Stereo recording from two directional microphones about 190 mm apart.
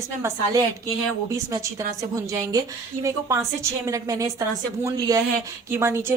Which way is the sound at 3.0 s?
15° right (ahead or behind).